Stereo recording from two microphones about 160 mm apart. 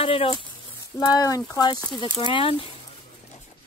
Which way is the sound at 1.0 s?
25° left (ahead or behind).